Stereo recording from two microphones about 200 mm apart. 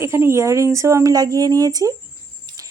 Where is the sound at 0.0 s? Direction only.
15° right (ahead or behind).